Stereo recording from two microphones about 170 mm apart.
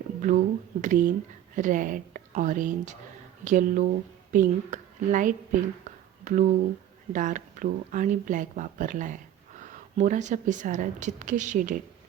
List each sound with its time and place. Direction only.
0.2 s a woman's voice: 50° right (ahead or behind)